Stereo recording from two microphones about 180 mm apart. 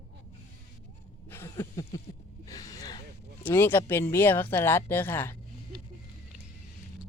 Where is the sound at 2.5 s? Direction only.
20° left (ahead or behind).